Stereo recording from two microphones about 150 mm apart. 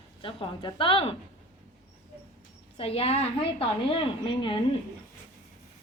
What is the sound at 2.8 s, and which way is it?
A woman's voice, 40° left (ahead or behind).